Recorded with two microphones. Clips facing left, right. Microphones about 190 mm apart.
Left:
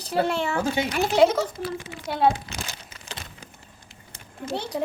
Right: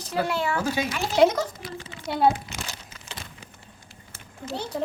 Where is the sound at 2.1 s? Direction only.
Centre (ahead or behind).